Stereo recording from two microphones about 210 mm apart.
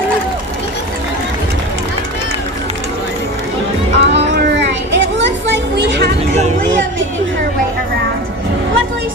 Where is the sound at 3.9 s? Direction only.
55° right (ahead or behind).